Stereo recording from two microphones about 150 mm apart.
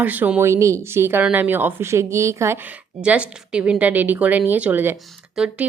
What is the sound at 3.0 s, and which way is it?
Speech, 10° right (ahead or behind).